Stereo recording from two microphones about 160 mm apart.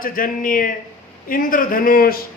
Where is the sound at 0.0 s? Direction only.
60° left (ahead or behind).